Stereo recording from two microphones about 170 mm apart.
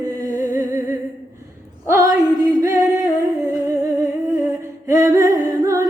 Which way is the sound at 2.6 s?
20° right (ahead or behind).